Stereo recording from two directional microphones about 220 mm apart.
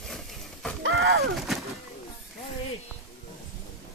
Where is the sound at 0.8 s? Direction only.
65° right (ahead or behind).